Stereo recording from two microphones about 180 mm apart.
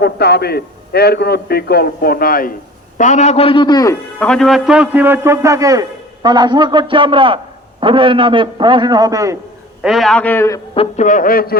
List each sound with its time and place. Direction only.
0.0 s a man's voice: 60° left (ahead or behind)
3.0 s a man's voice: 40° left (ahead or behind); by 3.9 s 20° left (ahead or behind)
4.2 s a man's voice: 5° left (ahead or behind); by 9.4 s 20° right (ahead or behind)
9.8 s a man's voice: centre (ahead or behind); by 10.6 s 15° left (ahead or behind)
10.8 s a man's voice: 40° left (ahead or behind)